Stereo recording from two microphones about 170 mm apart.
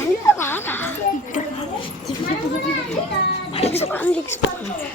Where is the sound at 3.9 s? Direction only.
10° left (ahead or behind).